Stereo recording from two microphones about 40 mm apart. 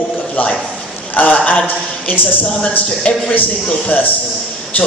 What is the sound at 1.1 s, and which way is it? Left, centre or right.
Speech, left.